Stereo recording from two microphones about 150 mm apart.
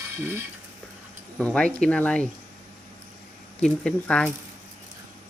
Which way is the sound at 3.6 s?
5° left (ahead or behind).